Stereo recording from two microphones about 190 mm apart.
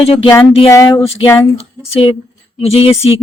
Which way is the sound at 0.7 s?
15° left (ahead or behind).